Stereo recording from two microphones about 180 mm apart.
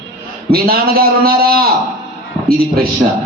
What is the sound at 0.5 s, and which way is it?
A man's voice, 55° right (ahead or behind).